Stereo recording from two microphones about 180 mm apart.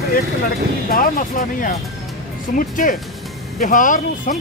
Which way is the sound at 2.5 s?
45° left (ahead or behind).